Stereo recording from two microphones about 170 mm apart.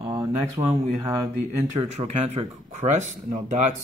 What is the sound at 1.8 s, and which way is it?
Speech, 35° right (ahead or behind).